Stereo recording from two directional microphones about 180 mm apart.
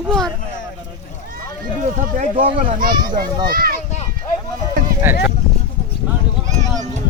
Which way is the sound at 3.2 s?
55° right (ahead or behind).